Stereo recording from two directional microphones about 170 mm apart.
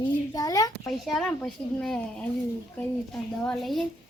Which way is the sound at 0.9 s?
Centre (ahead or behind).